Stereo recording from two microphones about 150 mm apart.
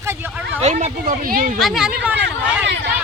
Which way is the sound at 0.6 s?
50° right (ahead or behind).